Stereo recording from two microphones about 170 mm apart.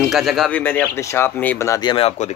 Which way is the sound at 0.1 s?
Centre (ahead or behind).